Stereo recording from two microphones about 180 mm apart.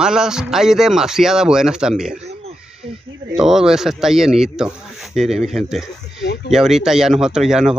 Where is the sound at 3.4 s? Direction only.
5° right (ahead or behind).